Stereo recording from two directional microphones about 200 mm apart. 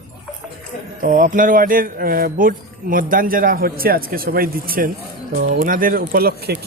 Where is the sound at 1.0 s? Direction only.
45° right (ahead or behind).